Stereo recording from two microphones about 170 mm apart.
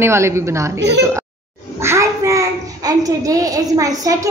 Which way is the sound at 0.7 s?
85° right.